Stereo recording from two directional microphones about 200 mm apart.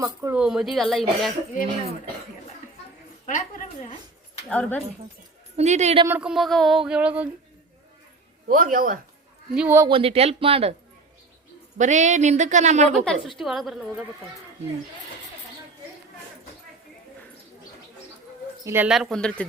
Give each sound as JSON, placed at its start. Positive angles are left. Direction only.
{"t": 0.0, "sound": "speech", "side_deg": -15}
{"t": 0.3, "sound": "a sound", "side_deg": -5}
{"t": 3.2, "sound": "a woman's voice", "side_deg": 40}
{"t": 4.4, "sound": "speech", "side_deg": 10}
{"t": 5.5, "sound": "speech", "side_deg": -35}
{"t": 6.1, "sound": "a sound", "side_deg": -5}
{"t": 8.4, "sound": "speech", "side_deg": -45}
{"t": 9.6, "sound": "speech", "side_deg": -10}
{"t": 9.9, "sound": "speech", "side_deg": -30}
{"t": 11.8, "sound": "speech", "side_deg": -35}
{"t": 13.1, "sound": "a sound", "side_deg": 0}
{"t": 18.6, "sound": "a sound", "side_deg": -10}